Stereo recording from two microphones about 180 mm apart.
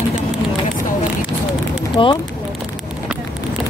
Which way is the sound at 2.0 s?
25° left (ahead or behind).